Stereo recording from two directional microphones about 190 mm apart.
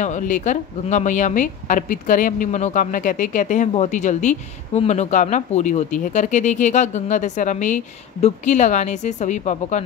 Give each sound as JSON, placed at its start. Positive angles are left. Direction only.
{"t": 0.0, "sound": "a woman's voice", "side_deg": 40}